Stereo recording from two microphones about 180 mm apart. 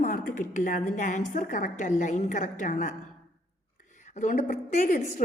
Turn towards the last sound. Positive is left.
turn(degrees=45)  # may be behind; listen again after turning